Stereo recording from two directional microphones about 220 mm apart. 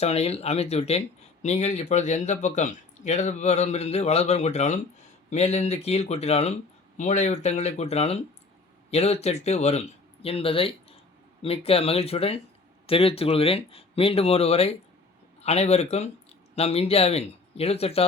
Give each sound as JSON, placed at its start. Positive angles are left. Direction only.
{"t": 0.0, "sound": "speech", "side_deg": 30}